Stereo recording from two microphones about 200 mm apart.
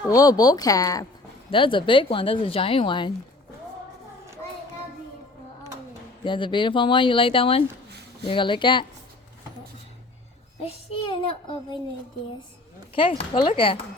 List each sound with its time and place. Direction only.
0.1 s speech: 20° left (ahead or behind)
6.2 s speech: 25° left (ahead or behind)
10.6 s speech: 25° left (ahead or behind)
12.9 s speech: 25° left (ahead or behind)